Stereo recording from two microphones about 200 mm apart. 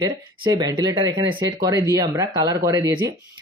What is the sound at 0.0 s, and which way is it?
Speech, 20° right (ahead or behind).